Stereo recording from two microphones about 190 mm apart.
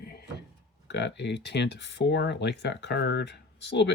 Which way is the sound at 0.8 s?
65° left (ahead or behind).